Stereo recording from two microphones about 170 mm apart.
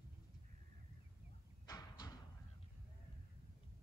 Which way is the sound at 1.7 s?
25° left (ahead or behind).